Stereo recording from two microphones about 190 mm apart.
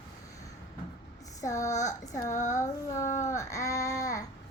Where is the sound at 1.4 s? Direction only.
15° left (ahead or behind).